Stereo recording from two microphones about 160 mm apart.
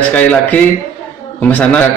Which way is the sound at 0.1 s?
10° left (ahead or behind).